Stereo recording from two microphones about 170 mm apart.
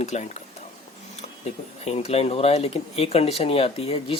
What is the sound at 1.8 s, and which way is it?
Speech, 35° left (ahead or behind).